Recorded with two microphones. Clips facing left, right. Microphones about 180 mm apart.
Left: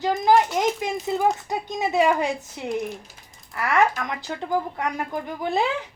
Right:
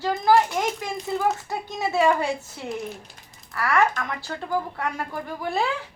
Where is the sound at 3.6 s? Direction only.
20° left (ahead or behind).